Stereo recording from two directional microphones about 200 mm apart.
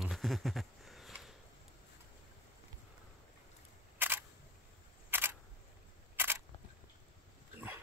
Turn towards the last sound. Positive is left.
turn(degrees=-10)  # may be behind; listen again after turning